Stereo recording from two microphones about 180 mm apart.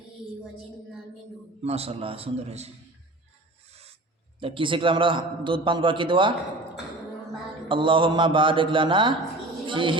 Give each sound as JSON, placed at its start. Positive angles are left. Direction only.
{"t": 1.6, "sound": "a man's voice", "side_deg": -35}
{"t": 3.7, "sound": "owl", "side_deg": -35}
{"t": 4.4, "sound": "a man's voice", "side_deg": -30}
{"t": 7.7, "sound": "a man's voice", "side_deg": -30}